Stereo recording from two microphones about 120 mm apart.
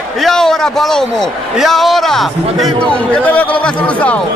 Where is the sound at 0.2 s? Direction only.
5° left (ahead or behind).